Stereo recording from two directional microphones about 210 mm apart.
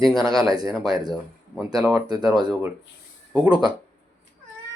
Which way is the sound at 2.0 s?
20° right (ahead or behind).